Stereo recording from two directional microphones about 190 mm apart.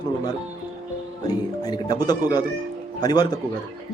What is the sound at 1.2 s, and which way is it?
Speech, 20° left (ahead or behind).